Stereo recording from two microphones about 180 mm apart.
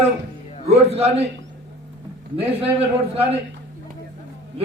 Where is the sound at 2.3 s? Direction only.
30° right (ahead or behind).